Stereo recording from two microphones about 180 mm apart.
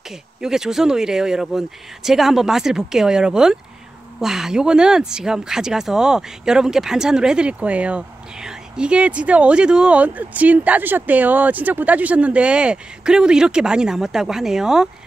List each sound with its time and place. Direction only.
0.1 s speech: 5° right (ahead or behind)